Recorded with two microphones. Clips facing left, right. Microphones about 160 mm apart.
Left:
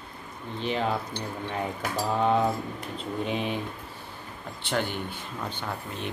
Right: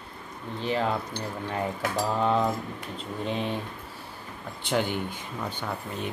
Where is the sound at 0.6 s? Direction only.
20° left (ahead or behind).